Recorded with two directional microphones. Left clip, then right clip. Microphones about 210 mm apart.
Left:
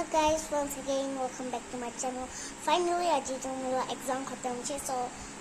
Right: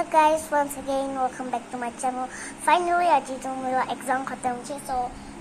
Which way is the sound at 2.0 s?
15° left (ahead or behind).